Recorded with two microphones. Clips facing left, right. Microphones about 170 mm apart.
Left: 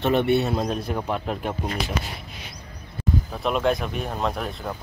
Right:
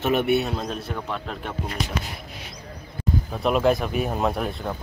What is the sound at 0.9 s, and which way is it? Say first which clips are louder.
Speech: left 4 dB; 10° left (ahead or behind).